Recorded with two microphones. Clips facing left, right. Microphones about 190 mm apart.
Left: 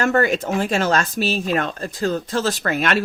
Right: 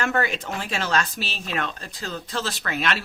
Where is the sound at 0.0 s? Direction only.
45° left (ahead or behind).